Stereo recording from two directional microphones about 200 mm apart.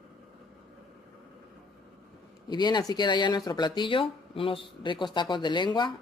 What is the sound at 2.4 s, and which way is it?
Speech, 20° left (ahead or behind).